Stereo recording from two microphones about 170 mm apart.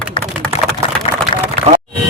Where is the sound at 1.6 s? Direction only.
30° left (ahead or behind).